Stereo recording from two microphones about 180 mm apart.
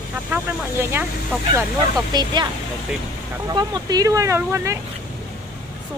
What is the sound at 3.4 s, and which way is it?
Speech, 20° right (ahead or behind).